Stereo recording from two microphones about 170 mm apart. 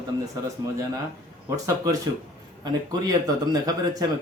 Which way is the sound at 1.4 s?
20° right (ahead or behind).